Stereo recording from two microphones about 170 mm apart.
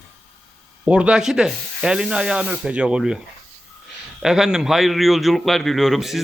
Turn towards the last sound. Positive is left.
turn(degrees=0)  # may be behind; listen again after turning